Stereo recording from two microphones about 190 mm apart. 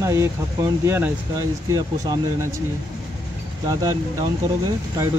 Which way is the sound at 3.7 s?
20° right (ahead or behind).